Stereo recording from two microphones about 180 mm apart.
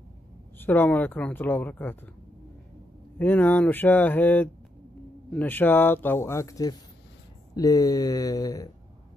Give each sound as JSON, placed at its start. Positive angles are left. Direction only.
{"t": 0.6, "sound": "speech", "side_deg": 10}
{"t": 3.2, "sound": "speech", "side_deg": 10}